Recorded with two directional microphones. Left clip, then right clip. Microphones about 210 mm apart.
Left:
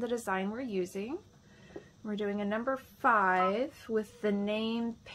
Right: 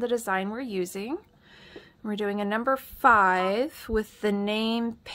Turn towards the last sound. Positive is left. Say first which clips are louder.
# right 7 dB
turn(degrees=-35)  # may be behind; listen again after turning